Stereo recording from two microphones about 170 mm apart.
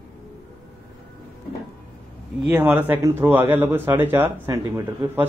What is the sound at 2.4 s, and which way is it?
Speech, 10° right (ahead or behind).